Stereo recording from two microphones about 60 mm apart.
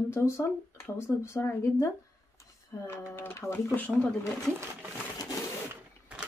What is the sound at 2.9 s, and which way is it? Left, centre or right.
Speech, left.